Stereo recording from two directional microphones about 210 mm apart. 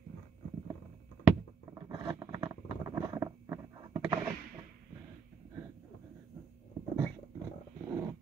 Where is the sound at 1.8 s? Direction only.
20° right (ahead or behind).